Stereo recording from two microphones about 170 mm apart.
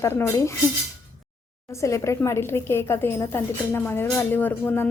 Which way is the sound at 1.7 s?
15° left (ahead or behind).